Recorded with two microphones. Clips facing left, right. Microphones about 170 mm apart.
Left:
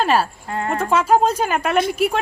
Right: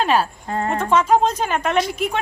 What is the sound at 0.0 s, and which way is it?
Speech, centre (ahead or behind).